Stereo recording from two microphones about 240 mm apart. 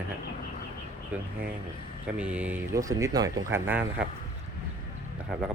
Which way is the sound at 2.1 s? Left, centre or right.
Centre.